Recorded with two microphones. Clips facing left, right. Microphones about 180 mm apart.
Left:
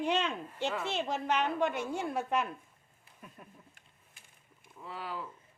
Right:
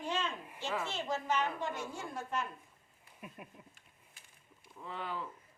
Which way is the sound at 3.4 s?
10° right (ahead or behind).